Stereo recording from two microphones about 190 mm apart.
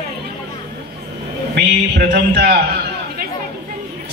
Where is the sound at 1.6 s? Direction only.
60° right (ahead or behind).